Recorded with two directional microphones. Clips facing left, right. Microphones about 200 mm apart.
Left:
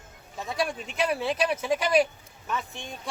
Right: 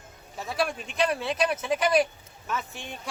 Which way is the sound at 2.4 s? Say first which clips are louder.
Even; 5° right (ahead or behind).